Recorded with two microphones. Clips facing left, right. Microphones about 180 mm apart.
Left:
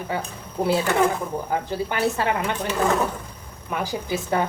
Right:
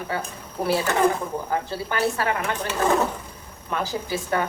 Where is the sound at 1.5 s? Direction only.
20° left (ahead or behind).